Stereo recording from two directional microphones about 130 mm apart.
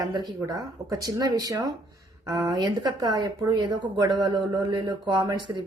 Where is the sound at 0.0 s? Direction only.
30° right (ahead or behind).